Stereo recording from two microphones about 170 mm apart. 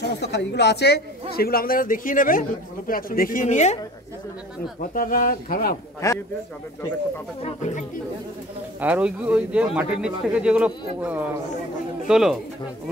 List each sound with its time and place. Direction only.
0.0 s a woman's voice: 85° left
1.3 s a man's voice: 65° left (ahead or behind); by 3.7 s 45° left (ahead or behind)
4.9 s a man's voice: 55° left (ahead or behind)
7.4 s speech: 45° left (ahead or behind)
8.8 s speech: 10° right (ahead or behind)